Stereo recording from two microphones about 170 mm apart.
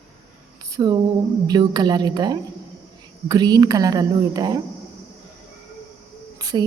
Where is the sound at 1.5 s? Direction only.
25° right (ahead or behind).